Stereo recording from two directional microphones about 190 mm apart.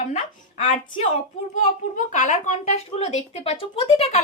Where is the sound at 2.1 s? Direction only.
40° left (ahead or behind).